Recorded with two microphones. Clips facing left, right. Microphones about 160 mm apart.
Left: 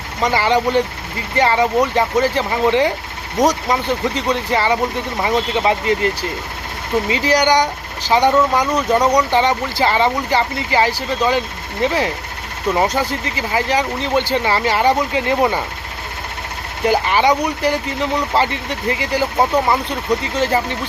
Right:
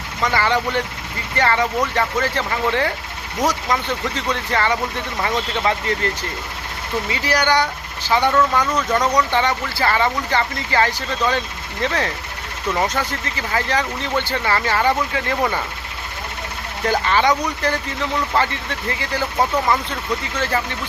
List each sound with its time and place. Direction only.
0.2 s speech: 15° left (ahead or behind)
7.1 s speech: 20° left (ahead or behind)
16.8 s speech: 15° left (ahead or behind)
19.6 s speech: 30° left (ahead or behind)
20.3 s speech: 20° left (ahead or behind)